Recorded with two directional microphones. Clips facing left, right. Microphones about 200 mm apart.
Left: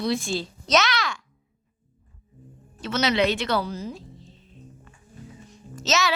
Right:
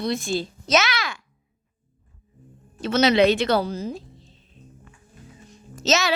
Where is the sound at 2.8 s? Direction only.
30° right (ahead or behind).